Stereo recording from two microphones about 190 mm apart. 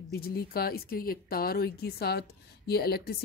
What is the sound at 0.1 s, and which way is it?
A woman's voice, 55° left (ahead or behind).